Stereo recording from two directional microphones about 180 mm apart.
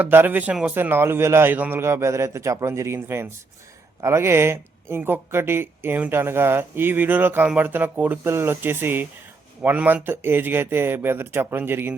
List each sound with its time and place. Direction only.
0.0 s speech: 10° right (ahead or behind)